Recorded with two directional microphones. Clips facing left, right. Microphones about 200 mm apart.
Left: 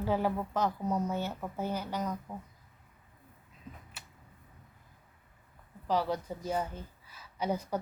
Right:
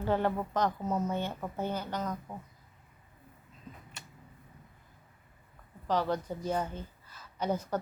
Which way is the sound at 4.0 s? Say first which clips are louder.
Right 2 dB; 5° left (ahead or behind).